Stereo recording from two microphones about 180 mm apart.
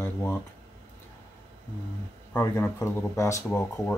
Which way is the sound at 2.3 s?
15° left (ahead or behind).